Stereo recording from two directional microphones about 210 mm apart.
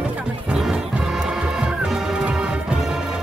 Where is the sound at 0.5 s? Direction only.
5° right (ahead or behind).